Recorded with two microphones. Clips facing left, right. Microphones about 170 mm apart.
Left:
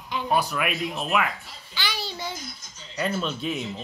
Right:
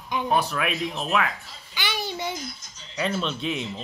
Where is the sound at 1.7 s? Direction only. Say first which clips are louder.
Right 2 dB; 20° right (ahead or behind).